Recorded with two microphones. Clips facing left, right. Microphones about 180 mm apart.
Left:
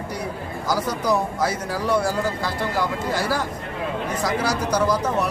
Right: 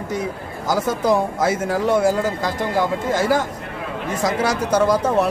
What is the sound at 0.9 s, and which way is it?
Speech, 25° right (ahead or behind).